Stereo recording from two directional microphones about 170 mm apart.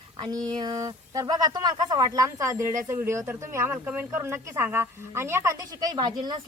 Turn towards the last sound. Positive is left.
turn(degrees=-25)  # may be behind; listen again after turning